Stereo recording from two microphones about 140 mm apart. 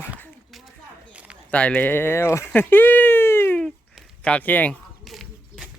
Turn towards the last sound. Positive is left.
turn(degrees=0)  # may be behind; listen again after turning